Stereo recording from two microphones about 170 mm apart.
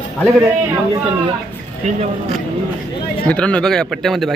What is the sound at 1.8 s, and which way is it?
Speech, 45° right (ahead or behind).